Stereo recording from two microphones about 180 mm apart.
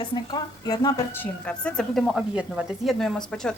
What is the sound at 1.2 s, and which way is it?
Speech, 5° left (ahead or behind).